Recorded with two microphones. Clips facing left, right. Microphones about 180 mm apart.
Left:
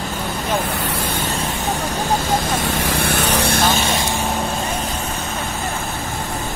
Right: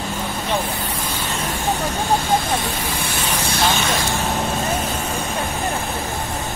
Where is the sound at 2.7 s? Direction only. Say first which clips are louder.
Left 5 dB; 75° left (ahead or behind).